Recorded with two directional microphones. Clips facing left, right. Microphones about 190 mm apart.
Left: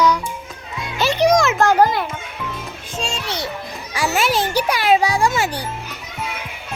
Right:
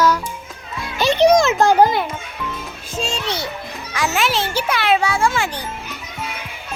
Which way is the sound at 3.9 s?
10° left (ahead or behind).